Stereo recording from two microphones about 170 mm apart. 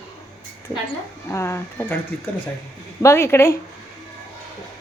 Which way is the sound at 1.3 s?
15° left (ahead or behind).